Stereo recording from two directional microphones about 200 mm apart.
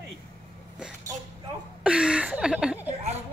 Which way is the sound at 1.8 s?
5° right (ahead or behind).